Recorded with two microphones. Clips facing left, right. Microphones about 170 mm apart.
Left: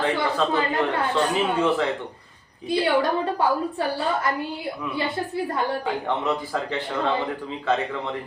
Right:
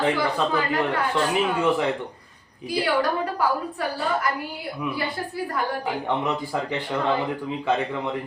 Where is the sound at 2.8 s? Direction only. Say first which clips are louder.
Left 1 dB; 25° left (ahead or behind).